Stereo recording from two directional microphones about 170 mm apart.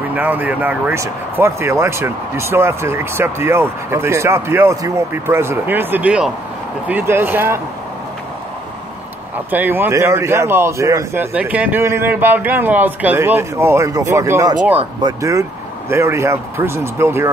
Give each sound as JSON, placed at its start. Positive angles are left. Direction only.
{"t": 0.1, "sound": "speech", "side_deg": -10}
{"t": 9.5, "sound": "speech", "side_deg": -10}
{"t": 15.9, "sound": "speech", "side_deg": -15}